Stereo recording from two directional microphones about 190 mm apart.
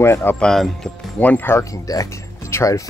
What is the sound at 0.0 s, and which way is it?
Speech, 10° left (ahead or behind).